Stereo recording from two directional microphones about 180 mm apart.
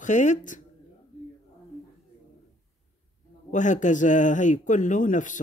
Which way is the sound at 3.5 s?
45° left (ahead or behind).